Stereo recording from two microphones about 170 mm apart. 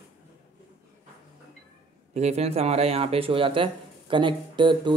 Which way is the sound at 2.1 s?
40° right (ahead or behind).